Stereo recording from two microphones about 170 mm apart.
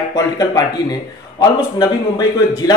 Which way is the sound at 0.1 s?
20° left (ahead or behind).